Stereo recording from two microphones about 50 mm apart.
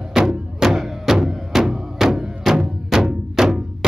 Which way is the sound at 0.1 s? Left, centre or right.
Centre.